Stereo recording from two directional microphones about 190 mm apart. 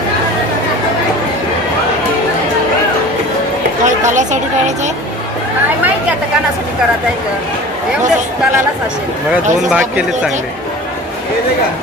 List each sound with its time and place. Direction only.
3.8 s chatter: 40° right (ahead or behind)
9.7 s speech: 5° right (ahead or behind)